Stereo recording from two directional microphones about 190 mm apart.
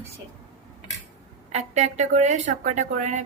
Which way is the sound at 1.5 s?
35° right (ahead or behind).